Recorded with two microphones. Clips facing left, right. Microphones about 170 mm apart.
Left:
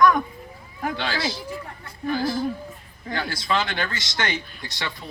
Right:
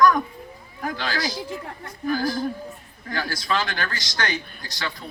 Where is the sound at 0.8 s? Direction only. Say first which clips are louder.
Left 1 dB; 25° left (ahead or behind).